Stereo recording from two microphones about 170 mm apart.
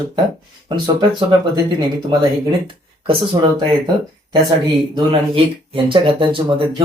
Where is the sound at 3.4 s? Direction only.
30° right (ahead or behind).